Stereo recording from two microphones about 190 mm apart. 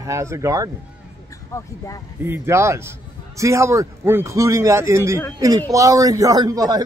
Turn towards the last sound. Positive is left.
turn(degrees=-20)  # may be behind; listen again after turning